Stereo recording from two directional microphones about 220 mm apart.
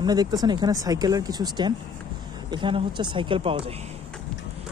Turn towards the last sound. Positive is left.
turn(degrees=-25)  # may be behind; listen again after turning